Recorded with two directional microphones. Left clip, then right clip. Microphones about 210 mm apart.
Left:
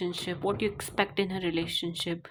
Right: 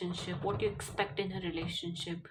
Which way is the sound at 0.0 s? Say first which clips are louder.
Left 6 dB; 45° left (ahead or behind).